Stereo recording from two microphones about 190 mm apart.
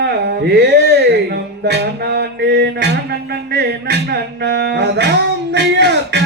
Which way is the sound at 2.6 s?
65° right (ahead or behind).